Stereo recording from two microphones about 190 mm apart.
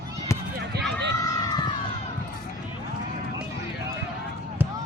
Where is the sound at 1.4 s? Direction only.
20° left (ahead or behind).